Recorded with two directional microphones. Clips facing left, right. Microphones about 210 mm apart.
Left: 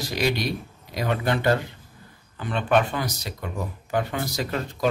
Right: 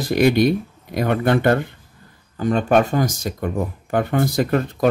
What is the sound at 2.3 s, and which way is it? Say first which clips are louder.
A man's voice: right 6 dB; 45° right (ahead or behind).